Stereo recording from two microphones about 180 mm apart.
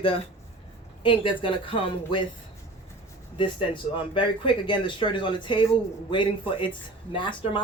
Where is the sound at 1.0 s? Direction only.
30° left (ahead or behind).